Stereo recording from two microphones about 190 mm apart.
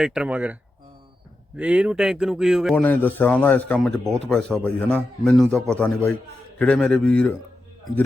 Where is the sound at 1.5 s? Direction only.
5° right (ahead or behind).